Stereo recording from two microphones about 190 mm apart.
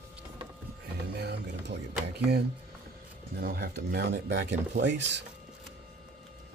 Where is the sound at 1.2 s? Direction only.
60° right (ahead or behind).